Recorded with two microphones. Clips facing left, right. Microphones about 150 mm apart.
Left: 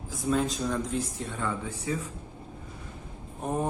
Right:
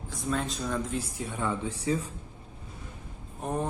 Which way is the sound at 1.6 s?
30° right (ahead or behind).